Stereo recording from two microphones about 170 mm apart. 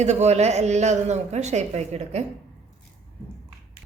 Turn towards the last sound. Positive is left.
turn(degrees=-40)  # may be behind; listen again after turning